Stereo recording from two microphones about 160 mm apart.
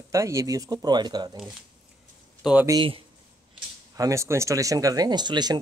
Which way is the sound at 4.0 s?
20° right (ahead or behind).